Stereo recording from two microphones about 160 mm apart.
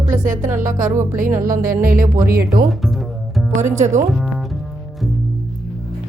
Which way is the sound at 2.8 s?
Centre (ahead or behind).